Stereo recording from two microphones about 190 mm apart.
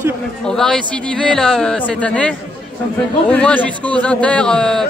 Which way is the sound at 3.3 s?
5° left (ahead or behind).